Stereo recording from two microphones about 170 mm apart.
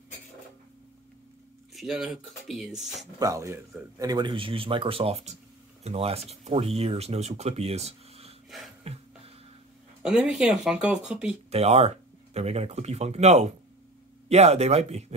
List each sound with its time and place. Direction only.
1.7 s speech: centre (ahead or behind)
3.2 s speech: 20° right (ahead or behind); by 8.4 s 35° right (ahead or behind)
8.8 s a sound: 35° right (ahead or behind)
10.0 s speech: 5° right (ahead or behind)
11.5 s speech: 40° right (ahead or behind)